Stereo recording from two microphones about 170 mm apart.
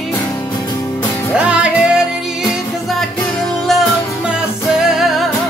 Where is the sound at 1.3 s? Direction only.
5° right (ahead or behind).